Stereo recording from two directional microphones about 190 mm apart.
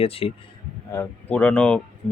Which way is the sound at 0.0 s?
30° left (ahead or behind).